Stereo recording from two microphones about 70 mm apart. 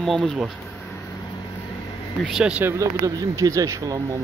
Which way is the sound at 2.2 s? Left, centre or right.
Centre.